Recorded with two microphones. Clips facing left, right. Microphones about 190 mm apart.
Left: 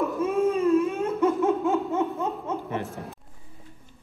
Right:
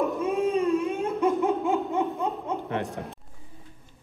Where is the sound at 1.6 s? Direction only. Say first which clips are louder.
Left 1 dB; 15° right (ahead or behind).